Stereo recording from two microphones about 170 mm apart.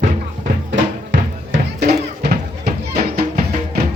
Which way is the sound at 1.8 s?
65° right (ahead or behind).